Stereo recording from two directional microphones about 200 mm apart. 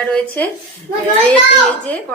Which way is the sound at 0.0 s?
5° left (ahead or behind).